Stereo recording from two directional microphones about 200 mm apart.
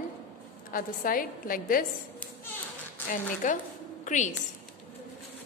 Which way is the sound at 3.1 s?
40° left (ahead or behind).